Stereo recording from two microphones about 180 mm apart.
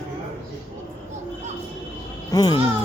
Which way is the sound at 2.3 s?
25° left (ahead or behind).